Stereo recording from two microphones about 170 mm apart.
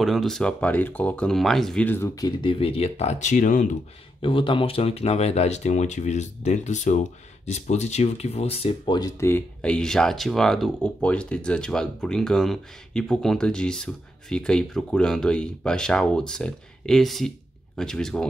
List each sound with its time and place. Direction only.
0.0 s speech: centre (ahead or behind)
2.1 s speech: 25° left (ahead or behind); by 3.7 s 50° left (ahead or behind)
4.2 s speech: 30° left (ahead or behind); by 18.2 s 5° left (ahead or behind)